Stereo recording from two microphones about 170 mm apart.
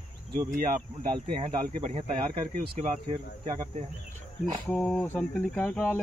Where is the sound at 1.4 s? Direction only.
35° right (ahead or behind).